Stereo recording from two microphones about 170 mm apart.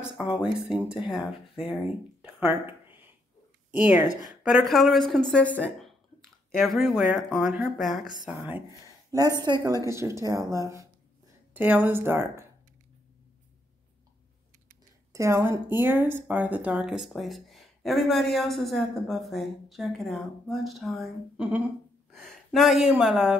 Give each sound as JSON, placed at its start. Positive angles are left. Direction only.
{"t": 0.0, "sound": "speech", "side_deg": -5}
{"t": 2.4, "sound": "a sound", "side_deg": -10}
{"t": 3.7, "sound": "speech", "side_deg": -10}
{"t": 9.1, "sound": "speech", "side_deg": -20}
{"t": 15.1, "sound": "speech", "side_deg": -15}